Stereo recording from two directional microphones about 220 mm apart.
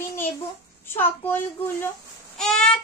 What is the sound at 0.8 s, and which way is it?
A child's voice, 10° left (ahead or behind).